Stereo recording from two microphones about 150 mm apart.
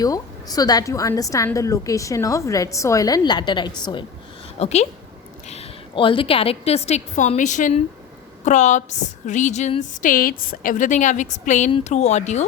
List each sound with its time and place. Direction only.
0.0 s a woman's voice: 25° left (ahead or behind)
4.6 s a woman's voice: 45° left (ahead or behind)
10.0 s a woman's voice: 65° left (ahead or behind); by 12.5 s 50° left (ahead or behind)